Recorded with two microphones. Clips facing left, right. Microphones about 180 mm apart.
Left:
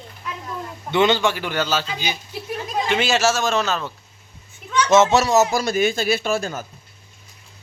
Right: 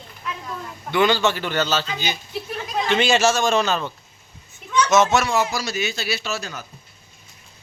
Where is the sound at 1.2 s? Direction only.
10° left (ahead or behind).